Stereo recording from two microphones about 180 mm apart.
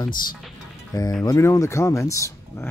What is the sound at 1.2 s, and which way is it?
Speech, 15° left (ahead or behind).